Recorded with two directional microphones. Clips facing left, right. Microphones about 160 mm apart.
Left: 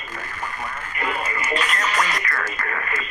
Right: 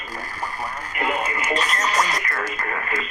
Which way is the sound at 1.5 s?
40° right (ahead or behind).